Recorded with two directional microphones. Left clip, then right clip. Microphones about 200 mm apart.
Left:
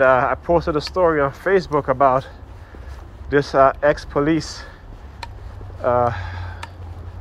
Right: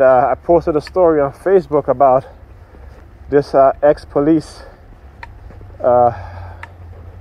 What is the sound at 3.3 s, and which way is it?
Speech, 50° right (ahead or behind).